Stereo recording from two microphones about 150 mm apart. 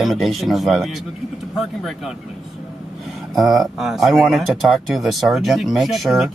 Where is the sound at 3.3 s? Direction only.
Centre (ahead or behind).